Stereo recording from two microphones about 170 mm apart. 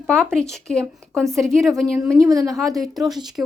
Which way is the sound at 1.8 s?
20° right (ahead or behind).